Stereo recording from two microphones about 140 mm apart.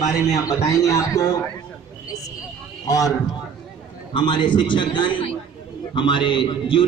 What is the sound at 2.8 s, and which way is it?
Speech, 25° left (ahead or behind).